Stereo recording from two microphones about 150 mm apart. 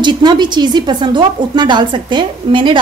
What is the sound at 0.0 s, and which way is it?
A woman's voice, 30° right (ahead or behind).